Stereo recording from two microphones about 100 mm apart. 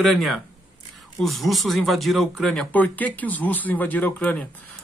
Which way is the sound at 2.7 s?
15° left (ahead or behind).